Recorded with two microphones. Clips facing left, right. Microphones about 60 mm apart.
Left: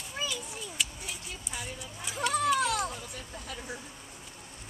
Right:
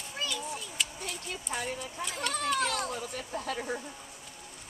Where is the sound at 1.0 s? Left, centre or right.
Right.